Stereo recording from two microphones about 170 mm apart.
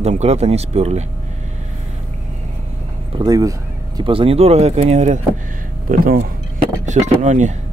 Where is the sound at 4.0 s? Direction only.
30° right (ahead or behind).